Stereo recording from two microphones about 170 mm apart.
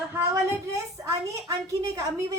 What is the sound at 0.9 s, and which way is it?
A woman's voice, 20° right (ahead or behind).